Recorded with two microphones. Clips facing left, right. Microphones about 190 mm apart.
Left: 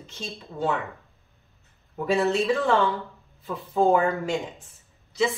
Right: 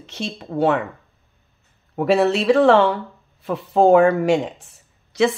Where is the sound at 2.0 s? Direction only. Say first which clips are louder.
Right 6 dB; 80° right.